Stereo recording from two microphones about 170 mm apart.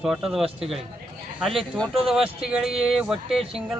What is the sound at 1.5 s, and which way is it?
Speech, centre (ahead or behind).